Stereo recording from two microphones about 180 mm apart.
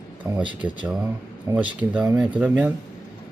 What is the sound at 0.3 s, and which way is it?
Speech, 5° right (ahead or behind).